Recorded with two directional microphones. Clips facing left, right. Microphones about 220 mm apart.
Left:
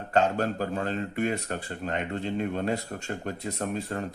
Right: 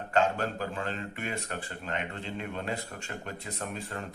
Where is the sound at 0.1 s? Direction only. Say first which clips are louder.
Left 3 dB; 40° left (ahead or behind).